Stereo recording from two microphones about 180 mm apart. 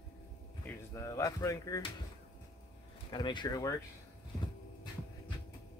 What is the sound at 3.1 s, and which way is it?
Speech, 25° left (ahead or behind).